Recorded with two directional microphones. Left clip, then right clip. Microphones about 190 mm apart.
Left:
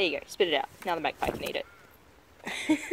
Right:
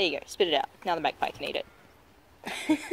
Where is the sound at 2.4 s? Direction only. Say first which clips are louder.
Even; 10° right (ahead or behind).